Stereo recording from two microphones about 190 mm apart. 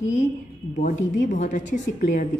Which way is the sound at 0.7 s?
40° left (ahead or behind).